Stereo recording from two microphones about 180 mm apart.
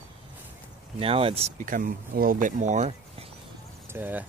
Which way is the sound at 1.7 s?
50° right (ahead or behind).